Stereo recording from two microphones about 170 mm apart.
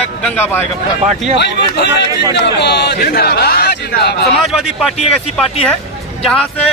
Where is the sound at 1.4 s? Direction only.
90° left.